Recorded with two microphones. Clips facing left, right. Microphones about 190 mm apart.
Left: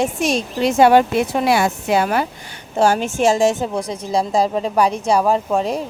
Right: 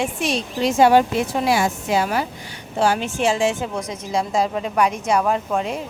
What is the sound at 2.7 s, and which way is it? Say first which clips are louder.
A woman's voice: left 4 dB; 45° left (ahead or behind).